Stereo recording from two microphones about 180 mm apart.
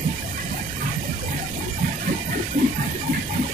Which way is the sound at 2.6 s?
45° right (ahead or behind).